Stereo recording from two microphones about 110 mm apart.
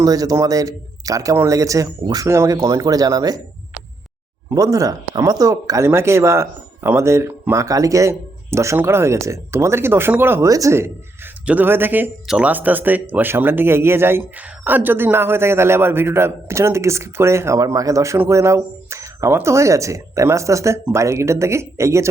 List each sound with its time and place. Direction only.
0.0 s speech: 35° right (ahead or behind)
4.5 s speech: 35° right (ahead or behind)